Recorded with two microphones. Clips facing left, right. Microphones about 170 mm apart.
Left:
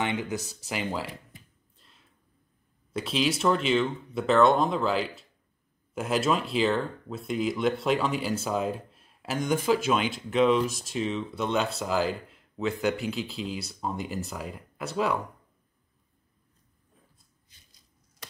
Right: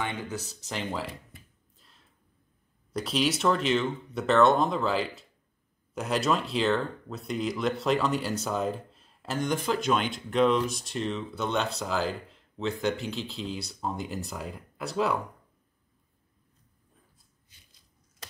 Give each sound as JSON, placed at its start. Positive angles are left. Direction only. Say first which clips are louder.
{"t": 0.0, "sound": "speech", "louder": "left 4 dB", "side_deg": 15}
{"t": 1.8, "sound": "a sound", "louder": "even", "side_deg": 0}
{"t": 2.9, "sound": "speech", "louder": "even", "side_deg": 0}